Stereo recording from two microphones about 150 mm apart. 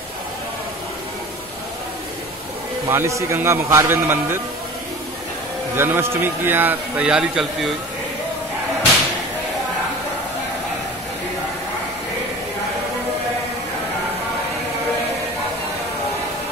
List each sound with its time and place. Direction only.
2.9 s a man's voice: 20° right (ahead or behind)
5.8 s a man's voice: 15° right (ahead or behind)